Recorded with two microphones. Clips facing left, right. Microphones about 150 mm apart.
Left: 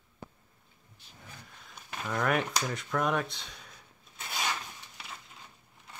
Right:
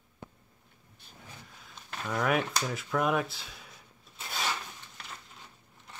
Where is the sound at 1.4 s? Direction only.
Centre (ahead or behind).